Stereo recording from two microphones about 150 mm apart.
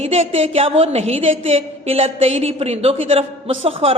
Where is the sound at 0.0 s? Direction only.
40° right (ahead or behind).